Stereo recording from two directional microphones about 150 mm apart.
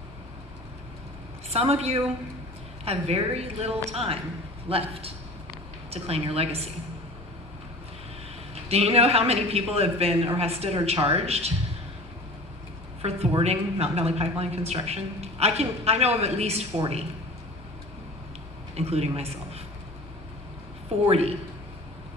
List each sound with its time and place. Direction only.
1.5 s a woman's voice: 40° right (ahead or behind)
8.6 s a woman's voice: 40° right (ahead or behind)
13.0 s a woman's voice: 45° right (ahead or behind)
18.8 s a woman's voice: 45° right (ahead or behind)
21.1 s a woman's voice: 40° right (ahead or behind)